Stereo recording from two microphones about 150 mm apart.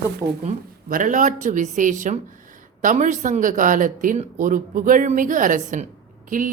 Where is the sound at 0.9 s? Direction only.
60° right (ahead or behind).